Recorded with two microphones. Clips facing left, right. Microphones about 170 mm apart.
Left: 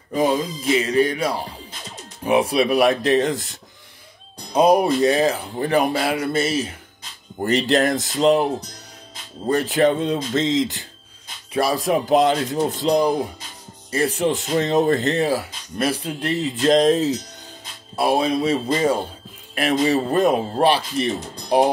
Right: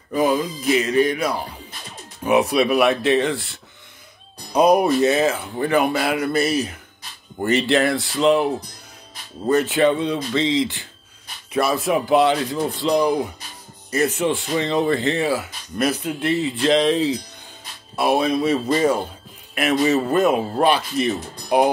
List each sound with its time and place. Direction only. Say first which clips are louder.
0.1 s speech: even; 30° left (ahead or behind)
4.5 s speech: even; 30° left (ahead or behind)
7.4 s speech: even; 40° left (ahead or behind)
13.8 s speech: even; 30° left (ahead or behind)
17.9 s speech: even; 30° left (ahead or behind)